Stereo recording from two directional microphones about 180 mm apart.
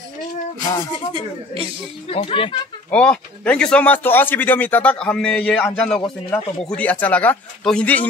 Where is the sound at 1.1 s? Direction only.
30° right (ahead or behind).